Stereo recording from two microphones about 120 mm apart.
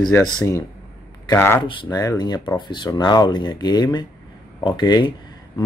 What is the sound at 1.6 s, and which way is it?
Speech, 35° left (ahead or behind).